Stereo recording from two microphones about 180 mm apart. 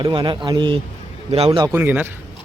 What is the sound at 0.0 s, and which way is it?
Speech, 25° right (ahead or behind).